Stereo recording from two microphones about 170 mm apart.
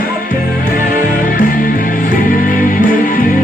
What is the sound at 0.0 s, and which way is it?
Music, 55° left (ahead or behind).